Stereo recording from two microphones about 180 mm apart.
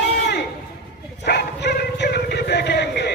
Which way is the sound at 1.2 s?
70° left (ahead or behind).